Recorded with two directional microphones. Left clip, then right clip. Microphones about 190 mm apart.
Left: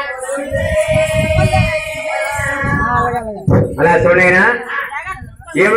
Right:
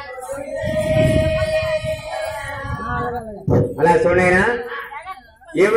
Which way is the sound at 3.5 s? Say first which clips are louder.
Left 3 dB; 40° right (ahead or behind).